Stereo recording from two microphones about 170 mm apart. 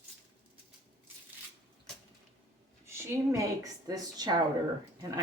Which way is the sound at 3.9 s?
20° right (ahead or behind).